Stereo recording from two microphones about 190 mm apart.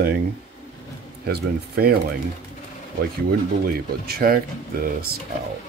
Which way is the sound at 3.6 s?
50° right (ahead or behind).